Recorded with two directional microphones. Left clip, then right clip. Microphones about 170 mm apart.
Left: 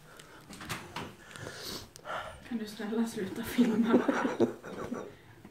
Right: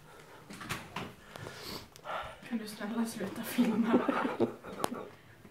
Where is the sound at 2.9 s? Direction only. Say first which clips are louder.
Left 4 dB; 20° right (ahead or behind).